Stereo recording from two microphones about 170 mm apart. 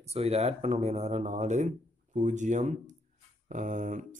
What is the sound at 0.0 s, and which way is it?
Speech, 40° right (ahead or behind).